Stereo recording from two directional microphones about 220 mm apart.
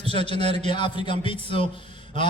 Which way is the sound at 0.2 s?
20° left (ahead or behind).